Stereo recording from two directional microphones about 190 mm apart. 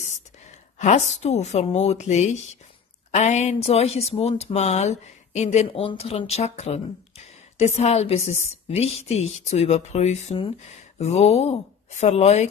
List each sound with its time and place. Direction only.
0.7 s speech: 35° left (ahead or behind)